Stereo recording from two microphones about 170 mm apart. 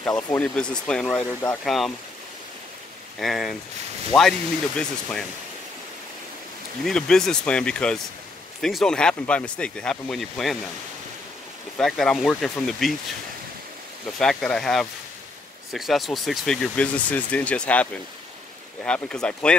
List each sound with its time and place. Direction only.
0.3 s speech: 5° left (ahead or behind)
3.2 s speech: centre (ahead or behind)
6.8 s speech: 5° left (ahead or behind)
11.8 s speech: centre (ahead or behind)
14.1 s speech: 5° left (ahead or behind)
18.9 s speech: 5° left (ahead or behind)